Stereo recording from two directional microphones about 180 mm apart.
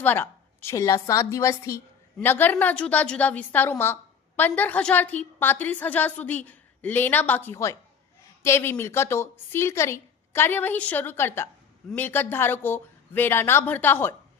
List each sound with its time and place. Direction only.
0.0 s a woman's voice: 10° left (ahead or behind)